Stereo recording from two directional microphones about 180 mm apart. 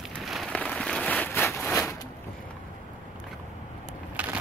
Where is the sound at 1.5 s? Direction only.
10° left (ahead or behind).